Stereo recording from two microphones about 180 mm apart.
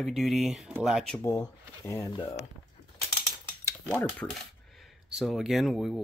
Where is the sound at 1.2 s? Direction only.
15° left (ahead or behind).